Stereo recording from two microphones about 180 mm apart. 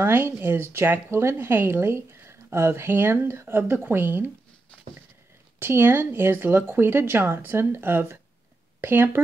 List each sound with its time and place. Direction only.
0.0 s speech: 10° right (ahead or behind)
5.6 s speech: 15° right (ahead or behind)